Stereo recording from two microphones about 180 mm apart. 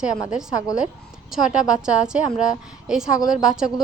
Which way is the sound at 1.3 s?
5° right (ahead or behind).